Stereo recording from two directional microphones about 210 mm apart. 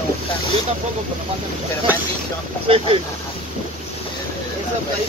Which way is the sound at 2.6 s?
25° right (ahead or behind).